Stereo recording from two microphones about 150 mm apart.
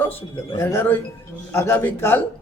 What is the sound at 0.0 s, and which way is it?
A man's voice, 15° left (ahead or behind).